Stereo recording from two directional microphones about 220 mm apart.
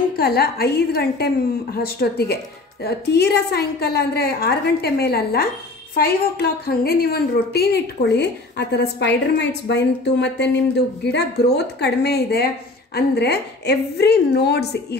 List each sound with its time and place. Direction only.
0.1 s a woman's voice: 45° left (ahead or behind)